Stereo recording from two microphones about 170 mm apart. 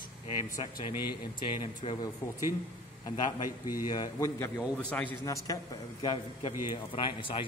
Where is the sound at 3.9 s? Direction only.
20° left (ahead or behind).